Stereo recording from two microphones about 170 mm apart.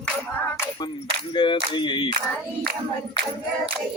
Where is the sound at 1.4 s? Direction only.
30° left (ahead or behind).